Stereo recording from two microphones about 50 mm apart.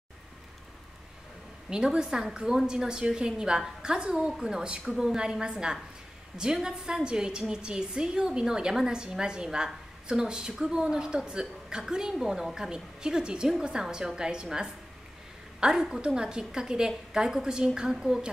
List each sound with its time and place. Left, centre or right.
1.7 s a woman's voice: centre